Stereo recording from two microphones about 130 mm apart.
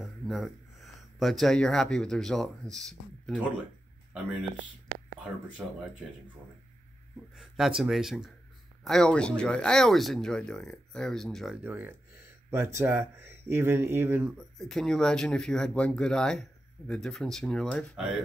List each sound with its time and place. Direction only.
0.2 s speech: centre (ahead or behind)
5.6 s speech: 10° right (ahead or behind)
7.3 s speech: centre (ahead or behind)
11.5 s speech: 15° right (ahead or behind)
14.6 s speech: 5° left (ahead or behind)